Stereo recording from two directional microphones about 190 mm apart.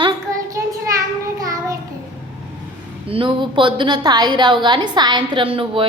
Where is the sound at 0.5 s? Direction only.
15° right (ahead or behind).